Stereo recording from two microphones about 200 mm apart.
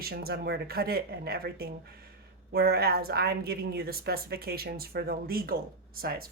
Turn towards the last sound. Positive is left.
turn(degrees=-50)  # may be behind; listen again after turning